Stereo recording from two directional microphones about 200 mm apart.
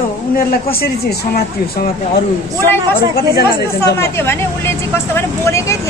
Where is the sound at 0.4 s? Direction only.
50° left (ahead or behind).